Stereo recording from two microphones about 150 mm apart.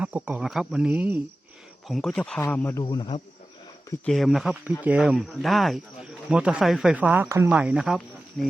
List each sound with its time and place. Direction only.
0.0 s speech: 10° right (ahead or behind)
1.9 s speech: centre (ahead or behind)
2.8 s speech: 30° left (ahead or behind)
4.0 s speech: centre (ahead or behind)